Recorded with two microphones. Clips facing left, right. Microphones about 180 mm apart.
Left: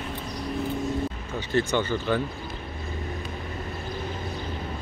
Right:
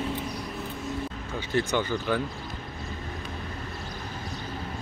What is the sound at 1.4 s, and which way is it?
Speech, 10° right (ahead or behind).